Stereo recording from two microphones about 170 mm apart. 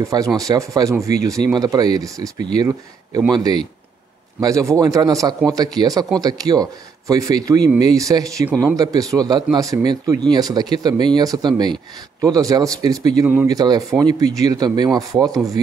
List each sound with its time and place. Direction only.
0.0 s a man's voice: 20° right (ahead or behind)